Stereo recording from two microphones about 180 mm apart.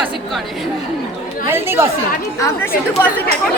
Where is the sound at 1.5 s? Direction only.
15° right (ahead or behind).